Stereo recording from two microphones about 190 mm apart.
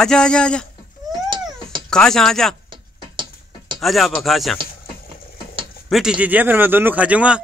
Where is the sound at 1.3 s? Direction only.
25° right (ahead or behind).